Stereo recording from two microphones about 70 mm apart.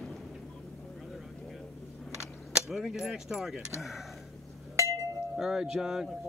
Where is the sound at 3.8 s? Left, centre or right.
Centre.